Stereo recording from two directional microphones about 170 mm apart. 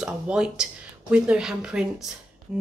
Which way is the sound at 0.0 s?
5° right (ahead or behind).